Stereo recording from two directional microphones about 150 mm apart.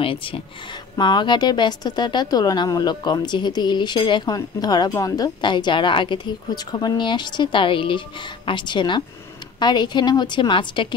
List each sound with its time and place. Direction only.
0.0 s a woman's voice: 35° left (ahead or behind)